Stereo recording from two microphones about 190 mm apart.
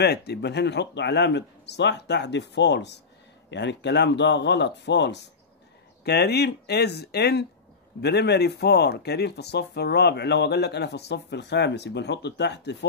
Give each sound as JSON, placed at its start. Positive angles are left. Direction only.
{"t": 0.0, "sound": "speech", "side_deg": 60}